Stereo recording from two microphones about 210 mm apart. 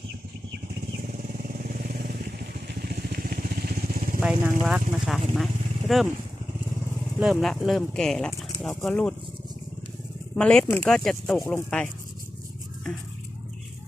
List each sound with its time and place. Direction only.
1.0 s vehicle: 40° right (ahead or behind)
4.2 s speech: 5° right (ahead or behind)
7.2 s speech: centre (ahead or behind)
10.3 s speech: 5° left (ahead or behind)